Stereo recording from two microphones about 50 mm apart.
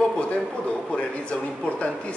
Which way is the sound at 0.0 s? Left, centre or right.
Centre.